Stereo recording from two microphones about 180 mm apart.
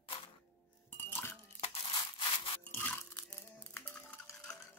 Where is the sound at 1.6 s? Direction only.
35° left (ahead or behind).